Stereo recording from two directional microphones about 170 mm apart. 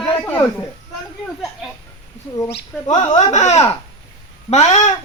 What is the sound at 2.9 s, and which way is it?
Speech, 40° left (ahead or behind).